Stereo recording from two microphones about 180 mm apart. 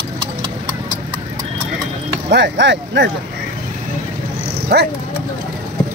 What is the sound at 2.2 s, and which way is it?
Speech, 75° right (ahead or behind).